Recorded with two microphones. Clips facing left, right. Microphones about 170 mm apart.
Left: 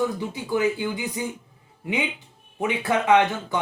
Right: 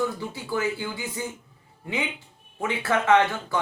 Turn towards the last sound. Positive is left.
turn(degrees=15)  # may be behind; listen again after turning